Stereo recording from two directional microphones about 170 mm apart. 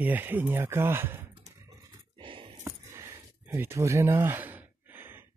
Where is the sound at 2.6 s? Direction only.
15° right (ahead or behind).